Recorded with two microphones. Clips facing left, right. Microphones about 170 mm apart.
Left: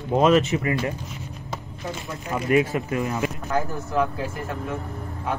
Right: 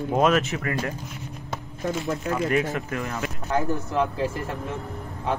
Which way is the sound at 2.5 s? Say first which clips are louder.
Left 4 dB; 20° left (ahead or behind).